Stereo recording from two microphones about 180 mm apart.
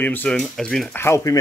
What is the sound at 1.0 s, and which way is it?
Speech, 15° left (ahead or behind).